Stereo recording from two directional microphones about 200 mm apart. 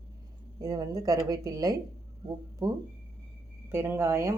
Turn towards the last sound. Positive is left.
turn(degrees=-15)  # may be behind; listen again after turning